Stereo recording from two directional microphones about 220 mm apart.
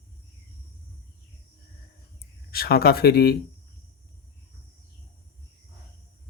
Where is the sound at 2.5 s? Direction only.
45° left (ahead or behind).